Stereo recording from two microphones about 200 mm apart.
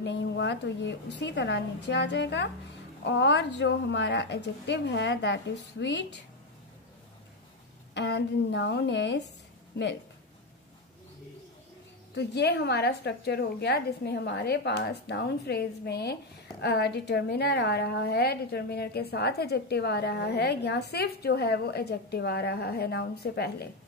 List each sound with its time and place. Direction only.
0.0 s a woman's voice: 60° left (ahead or behind)
7.9 s a woman's voice: 60° left (ahead or behind)
12.2 s a woman's voice: 55° left (ahead or behind)